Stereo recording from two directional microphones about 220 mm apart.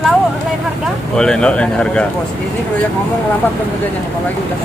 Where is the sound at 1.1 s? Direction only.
5° left (ahead or behind).